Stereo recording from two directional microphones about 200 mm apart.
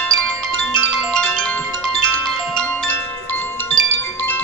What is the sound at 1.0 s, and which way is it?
Music, 5° left (ahead or behind).